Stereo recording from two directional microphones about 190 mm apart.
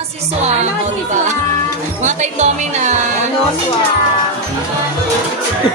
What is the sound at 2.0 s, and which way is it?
Speech, 40° right (ahead or behind).